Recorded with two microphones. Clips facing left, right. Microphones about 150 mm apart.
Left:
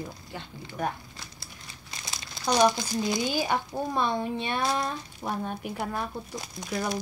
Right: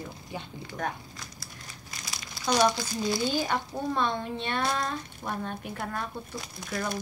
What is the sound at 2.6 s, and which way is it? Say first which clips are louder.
A woman's voice: left 2 dB; 20° left (ahead or behind).